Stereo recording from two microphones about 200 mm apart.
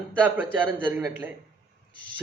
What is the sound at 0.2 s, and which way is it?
A man's voice, 10° right (ahead or behind).